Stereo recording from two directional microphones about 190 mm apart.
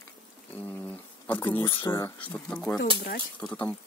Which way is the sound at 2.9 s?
55° left (ahead or behind).